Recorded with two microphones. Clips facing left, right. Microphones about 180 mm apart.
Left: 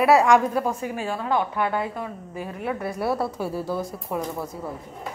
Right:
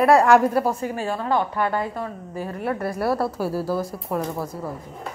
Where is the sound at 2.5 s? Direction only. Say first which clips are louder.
Right 2 dB; centre (ahead or behind).